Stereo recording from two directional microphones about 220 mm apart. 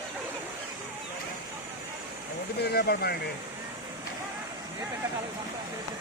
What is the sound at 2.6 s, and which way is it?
Speech, 45° left (ahead or behind).